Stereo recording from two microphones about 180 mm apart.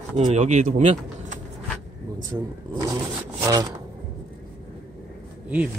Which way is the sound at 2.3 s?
5° right (ahead or behind).